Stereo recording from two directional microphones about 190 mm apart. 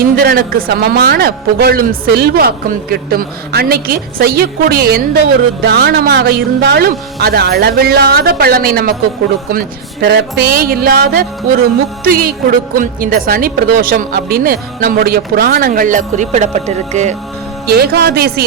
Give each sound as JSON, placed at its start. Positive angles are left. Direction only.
{"t": 0.0, "sound": "speech", "side_deg": -50}
{"t": 17.7, "sound": "speech", "side_deg": -55}